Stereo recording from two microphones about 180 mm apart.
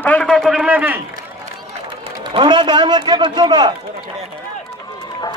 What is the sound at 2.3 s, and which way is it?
A man's voice, 25° right (ahead or behind).